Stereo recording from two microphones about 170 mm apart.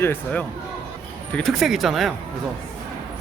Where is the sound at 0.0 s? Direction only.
10° left (ahead or behind).